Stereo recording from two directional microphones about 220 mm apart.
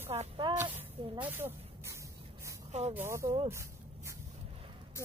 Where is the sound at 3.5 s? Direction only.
10° right (ahead or behind).